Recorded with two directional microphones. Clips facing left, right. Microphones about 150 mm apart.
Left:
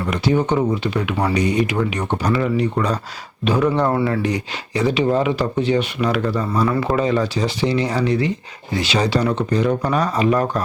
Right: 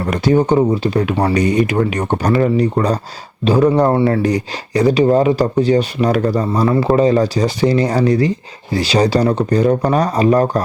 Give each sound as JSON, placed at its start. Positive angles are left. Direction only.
{"t": 0.1, "sound": "speech", "side_deg": -40}
{"t": 1.3, "sound": "speech", "side_deg": -45}
{"t": 6.5, "sound": "speech", "side_deg": -30}